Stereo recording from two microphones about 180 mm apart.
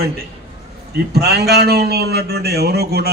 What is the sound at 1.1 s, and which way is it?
A man's voice, 65° right (ahead or behind).